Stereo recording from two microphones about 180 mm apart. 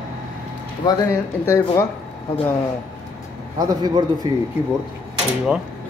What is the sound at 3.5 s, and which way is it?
Speech, 20° right (ahead or behind).